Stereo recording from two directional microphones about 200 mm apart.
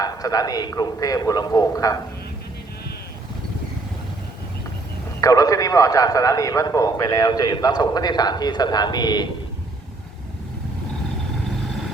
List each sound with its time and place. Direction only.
0.0 s a man's voice: 20° left (ahead or behind)
5.2 s a man's voice: 15° left (ahead or behind)